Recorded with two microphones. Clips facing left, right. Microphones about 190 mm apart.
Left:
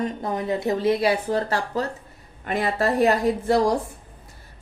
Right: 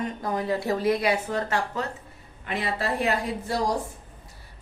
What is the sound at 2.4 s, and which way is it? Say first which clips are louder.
Speech: left 6 dB; 45° left (ahead or behind).